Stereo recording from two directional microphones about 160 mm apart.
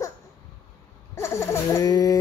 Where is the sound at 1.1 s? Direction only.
15° left (ahead or behind).